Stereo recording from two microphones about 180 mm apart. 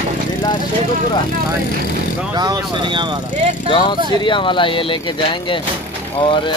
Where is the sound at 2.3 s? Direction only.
20° right (ahead or behind).